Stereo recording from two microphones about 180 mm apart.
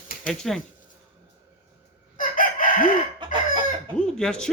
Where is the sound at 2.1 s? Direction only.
50° left (ahead or behind).